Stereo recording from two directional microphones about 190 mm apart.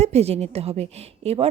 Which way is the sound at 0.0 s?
35° right (ahead or behind).